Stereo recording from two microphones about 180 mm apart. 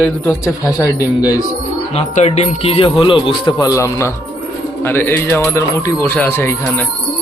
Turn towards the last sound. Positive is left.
turn(degrees=10)  # may be behind; listen again after turning